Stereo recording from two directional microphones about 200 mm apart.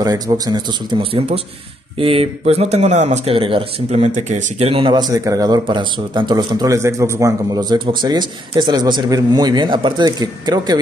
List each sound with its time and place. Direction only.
0.0 s speech: 20° right (ahead or behind)